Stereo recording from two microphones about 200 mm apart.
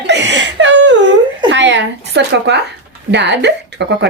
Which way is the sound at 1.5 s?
65° right (ahead or behind).